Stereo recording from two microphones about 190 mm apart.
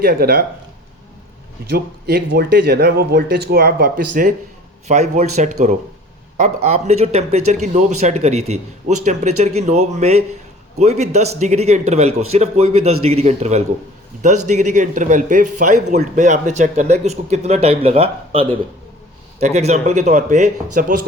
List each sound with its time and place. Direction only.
0.0 s speech: 55° right (ahead or behind)
1.7 s speech: 55° right (ahead or behind)